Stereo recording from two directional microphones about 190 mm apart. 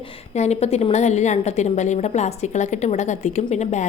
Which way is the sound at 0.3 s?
35° left (ahead or behind).